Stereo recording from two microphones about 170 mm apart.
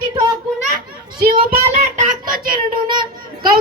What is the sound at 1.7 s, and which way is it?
Speech, 45° right (ahead or behind).